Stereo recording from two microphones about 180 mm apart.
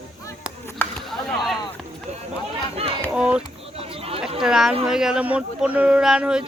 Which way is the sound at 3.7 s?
35° right (ahead or behind).